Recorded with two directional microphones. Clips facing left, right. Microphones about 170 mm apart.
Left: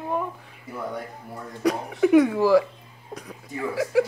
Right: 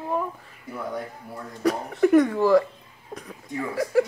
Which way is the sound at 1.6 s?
Centre (ahead or behind).